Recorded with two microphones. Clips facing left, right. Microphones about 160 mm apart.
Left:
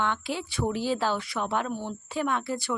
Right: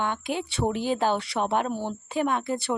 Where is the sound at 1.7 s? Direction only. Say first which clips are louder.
Right 3 dB; 30° right (ahead or behind).